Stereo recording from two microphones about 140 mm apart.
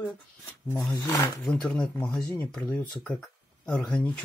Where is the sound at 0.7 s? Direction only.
20° left (ahead or behind).